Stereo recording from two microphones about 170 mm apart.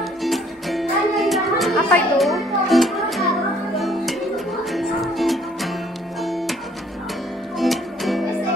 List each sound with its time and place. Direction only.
0.2 s music: centre (ahead or behind)
7.5 s music: centre (ahead or behind)